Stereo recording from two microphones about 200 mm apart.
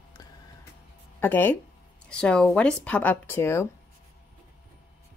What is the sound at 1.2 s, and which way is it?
Speech, 10° left (ahead or behind).